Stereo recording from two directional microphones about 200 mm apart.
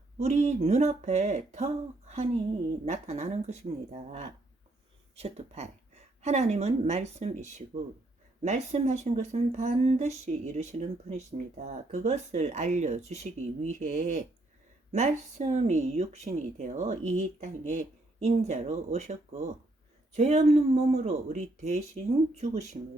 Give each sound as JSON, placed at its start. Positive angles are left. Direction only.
{"t": 0.2, "sound": "speech", "side_deg": -35}
{"t": 5.1, "sound": "a woman's voice", "side_deg": -30}